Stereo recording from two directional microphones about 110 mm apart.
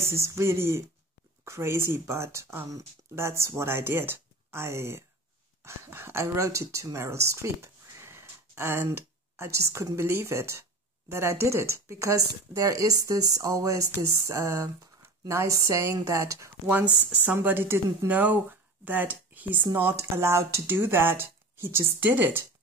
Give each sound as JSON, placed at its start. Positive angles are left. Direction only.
{"t": 0.0, "sound": "speech", "side_deg": -25}
{"t": 17.1, "sound": "speech", "side_deg": -15}